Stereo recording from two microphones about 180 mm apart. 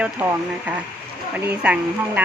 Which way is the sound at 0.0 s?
10° right (ahead or behind).